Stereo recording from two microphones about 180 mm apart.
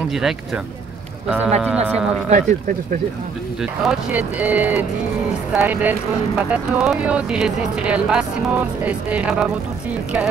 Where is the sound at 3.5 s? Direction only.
5° right (ahead or behind).